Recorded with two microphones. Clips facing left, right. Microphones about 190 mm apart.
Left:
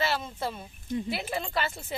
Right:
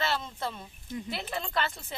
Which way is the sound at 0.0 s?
10° left (ahead or behind).